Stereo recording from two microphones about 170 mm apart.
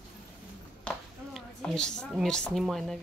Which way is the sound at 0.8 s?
5° left (ahead or behind).